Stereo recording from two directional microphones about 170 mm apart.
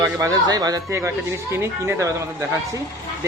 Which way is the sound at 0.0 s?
20° right (ahead or behind).